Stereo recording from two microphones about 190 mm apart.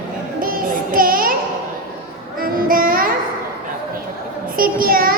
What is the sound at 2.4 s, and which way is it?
Child singing, 50° right (ahead or behind).